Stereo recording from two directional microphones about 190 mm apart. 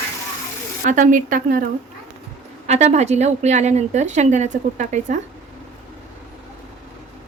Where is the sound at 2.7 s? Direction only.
35° right (ahead or behind).